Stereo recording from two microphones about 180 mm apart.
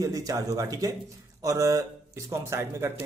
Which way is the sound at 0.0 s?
20° right (ahead or behind).